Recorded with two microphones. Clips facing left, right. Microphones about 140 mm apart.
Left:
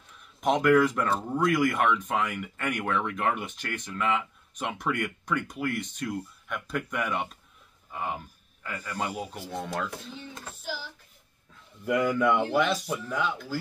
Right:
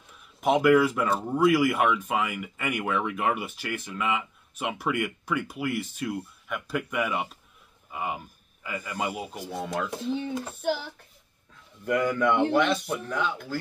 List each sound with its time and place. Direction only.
0.2 s speech: 5° right (ahead or behind)
9.8 s speech: 20° right (ahead or behind)
10.6 s a child's voice: 60° right (ahead or behind)
11.8 s speech: 5° left (ahead or behind)